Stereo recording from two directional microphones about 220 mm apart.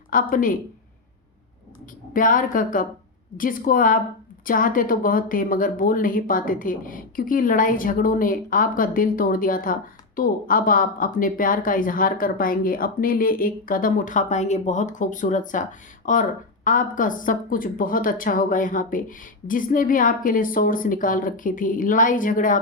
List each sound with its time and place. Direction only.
0.1 s speech: 35° left (ahead or behind)
2.1 s speech: 40° left (ahead or behind)